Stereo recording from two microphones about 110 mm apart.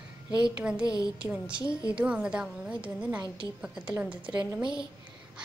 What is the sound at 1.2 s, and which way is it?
A woman's voice, 10° right (ahead or behind).